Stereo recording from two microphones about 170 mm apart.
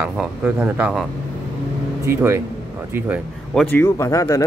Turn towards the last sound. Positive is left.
turn(degrees=20)  # may be behind; listen again after turning